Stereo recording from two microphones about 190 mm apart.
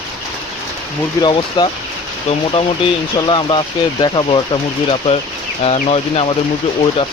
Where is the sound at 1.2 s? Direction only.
25° left (ahead or behind).